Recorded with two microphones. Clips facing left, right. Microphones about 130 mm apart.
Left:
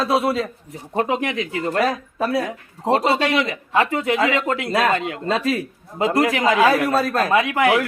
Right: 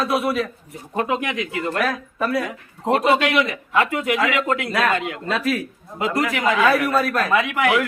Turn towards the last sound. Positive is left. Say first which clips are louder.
# left 2 dB
turn(degrees=30)  # may be behind; listen again after turning